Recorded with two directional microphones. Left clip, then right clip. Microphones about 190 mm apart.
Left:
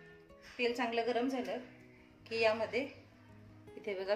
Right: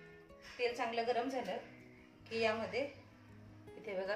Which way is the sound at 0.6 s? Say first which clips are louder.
Left 3 dB; 55° left (ahead or behind).